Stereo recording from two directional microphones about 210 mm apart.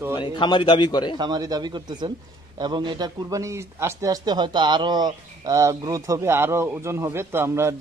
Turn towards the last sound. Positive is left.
turn(degrees=-10)  # may be behind; listen again after turning